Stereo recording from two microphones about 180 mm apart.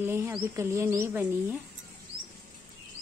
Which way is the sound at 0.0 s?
15° right (ahead or behind).